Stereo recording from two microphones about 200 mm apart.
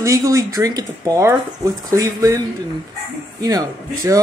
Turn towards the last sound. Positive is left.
turn(degrees=-15)  # may be behind; listen again after turning